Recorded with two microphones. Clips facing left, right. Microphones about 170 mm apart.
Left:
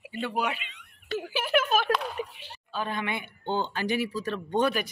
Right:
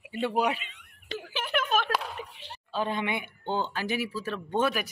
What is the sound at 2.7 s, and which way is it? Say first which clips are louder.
Speech: right 2 dB; 25° right (ahead or behind).